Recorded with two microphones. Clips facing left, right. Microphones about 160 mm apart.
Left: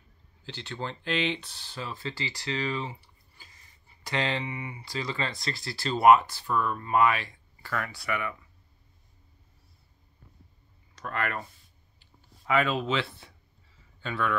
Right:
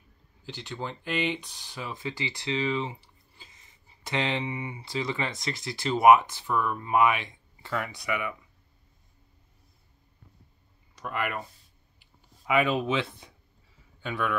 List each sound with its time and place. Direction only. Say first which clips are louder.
0.5 s speech: even; 10° right (ahead or behind)
11.0 s speech: even; 10° right (ahead or behind)